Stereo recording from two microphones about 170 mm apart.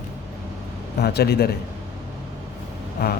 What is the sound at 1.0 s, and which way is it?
Speech, 70° left (ahead or behind).